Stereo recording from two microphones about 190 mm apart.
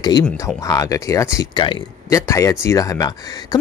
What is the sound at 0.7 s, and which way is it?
Speech, 15° left (ahead or behind).